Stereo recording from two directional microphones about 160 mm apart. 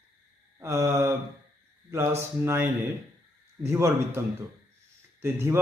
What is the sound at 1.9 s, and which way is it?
A man's voice, 15° right (ahead or behind).